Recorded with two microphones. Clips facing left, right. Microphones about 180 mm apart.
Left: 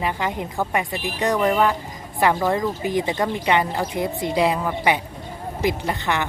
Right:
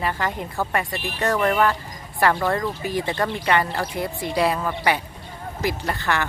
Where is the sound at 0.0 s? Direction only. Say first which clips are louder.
Left 1 dB; 15° left (ahead or behind).